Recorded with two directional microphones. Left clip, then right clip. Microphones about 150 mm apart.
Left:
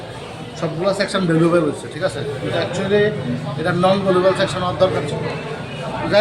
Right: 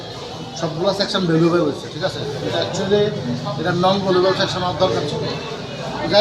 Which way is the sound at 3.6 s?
15° left (ahead or behind).